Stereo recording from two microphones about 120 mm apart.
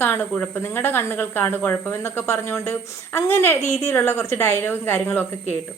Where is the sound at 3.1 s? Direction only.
20° left (ahead or behind).